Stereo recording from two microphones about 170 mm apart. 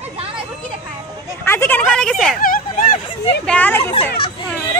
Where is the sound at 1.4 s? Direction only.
15° left (ahead or behind).